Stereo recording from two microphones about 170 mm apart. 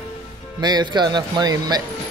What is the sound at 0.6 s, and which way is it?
Speech, 25° right (ahead or behind).